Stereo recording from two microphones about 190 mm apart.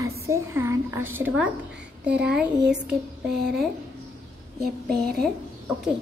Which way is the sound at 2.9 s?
60° right (ahead or behind).